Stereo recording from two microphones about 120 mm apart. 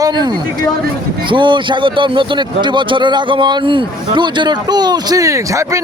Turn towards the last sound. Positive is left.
turn(degrees=-25)  # may be behind; listen again after turning